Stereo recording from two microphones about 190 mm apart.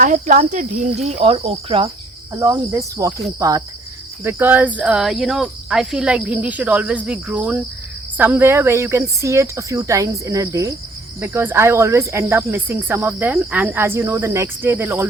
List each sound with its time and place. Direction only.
0.0 s speech: 45° right (ahead or behind)
2.3 s speech: 15° right (ahead or behind)